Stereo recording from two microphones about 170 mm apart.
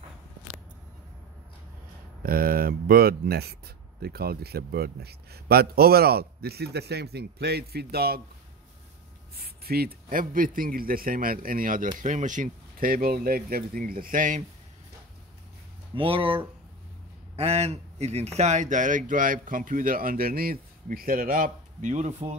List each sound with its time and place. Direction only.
2.2 s speech: 60° right (ahead or behind)
9.4 s a man's voice: 65° right (ahead or behind)
16.0 s speech: 30° right (ahead or behind)